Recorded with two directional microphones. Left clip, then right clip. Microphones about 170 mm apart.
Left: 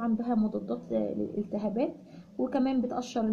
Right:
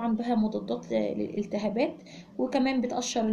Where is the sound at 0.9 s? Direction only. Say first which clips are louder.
Right 2 dB; 15° right (ahead or behind).